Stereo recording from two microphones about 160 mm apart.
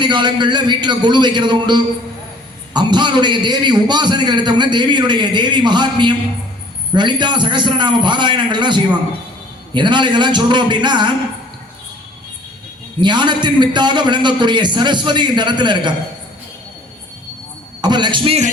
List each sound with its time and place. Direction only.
0.0 s a man's voice: 30° right (ahead or behind)
13.0 s a man's voice: 30° right (ahead or behind)
17.8 s a man's voice: 30° right (ahead or behind)